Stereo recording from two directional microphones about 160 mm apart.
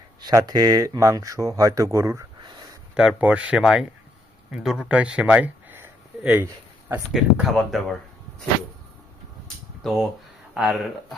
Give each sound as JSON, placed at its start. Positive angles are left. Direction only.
{"t": 0.2, "sound": "speech", "side_deg": -25}
{"t": 2.9, "sound": "speech", "side_deg": -5}
{"t": 7.1, "sound": "speech", "side_deg": 0}
{"t": 9.8, "sound": "speech", "side_deg": 0}